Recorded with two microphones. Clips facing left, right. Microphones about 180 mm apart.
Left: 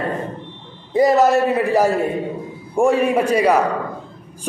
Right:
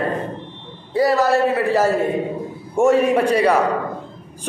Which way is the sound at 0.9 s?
20° left (ahead or behind).